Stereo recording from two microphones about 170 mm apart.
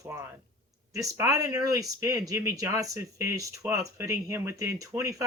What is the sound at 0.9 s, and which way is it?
Speech, 20° right (ahead or behind).